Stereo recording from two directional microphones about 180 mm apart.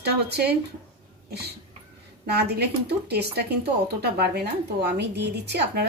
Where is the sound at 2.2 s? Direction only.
65° right (ahead or behind).